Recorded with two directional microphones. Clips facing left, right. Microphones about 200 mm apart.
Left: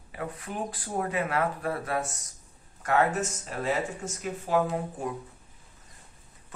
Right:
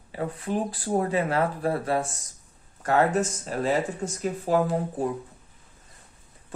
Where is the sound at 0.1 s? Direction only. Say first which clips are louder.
Right 7 dB; 30° right (ahead or behind).